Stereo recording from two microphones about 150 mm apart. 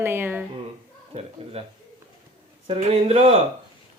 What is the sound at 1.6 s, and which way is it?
Speech, 45° right (ahead or behind).